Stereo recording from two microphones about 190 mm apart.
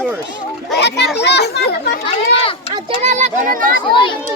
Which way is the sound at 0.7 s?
60° left (ahead or behind).